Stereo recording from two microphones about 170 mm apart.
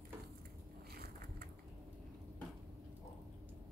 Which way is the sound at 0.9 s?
55° right (ahead or behind).